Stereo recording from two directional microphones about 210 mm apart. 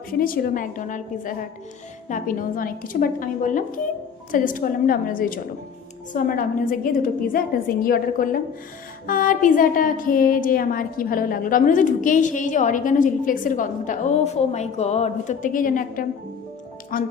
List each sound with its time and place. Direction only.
0.1 s a woman's voice: 45° left (ahead or behind)